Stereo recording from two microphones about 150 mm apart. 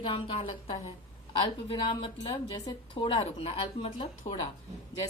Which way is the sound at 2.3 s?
25° left (ahead or behind).